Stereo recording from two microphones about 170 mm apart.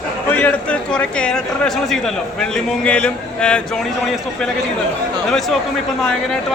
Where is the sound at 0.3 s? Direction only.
10° left (ahead or behind).